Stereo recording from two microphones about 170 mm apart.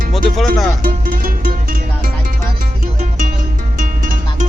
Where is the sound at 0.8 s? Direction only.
55° right (ahead or behind).